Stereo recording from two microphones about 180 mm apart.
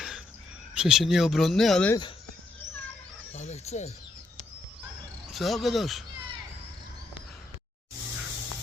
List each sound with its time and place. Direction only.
0.7 s speech: 5° right (ahead or behind)
3.3 s speech: 35° left (ahead or behind)
5.3 s speech: centre (ahead or behind)